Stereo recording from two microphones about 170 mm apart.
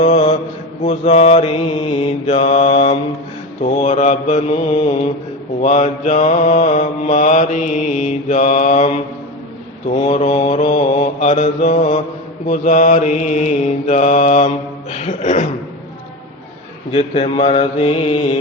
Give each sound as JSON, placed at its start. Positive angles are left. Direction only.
{"t": 0.0, "sound": "mantra", "side_deg": 40}
{"t": 10.1, "sound": "mantra", "side_deg": 40}
{"t": 16.9, "sound": "mantra", "side_deg": 35}